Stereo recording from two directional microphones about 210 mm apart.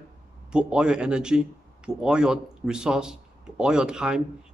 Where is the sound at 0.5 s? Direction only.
5° right (ahead or behind).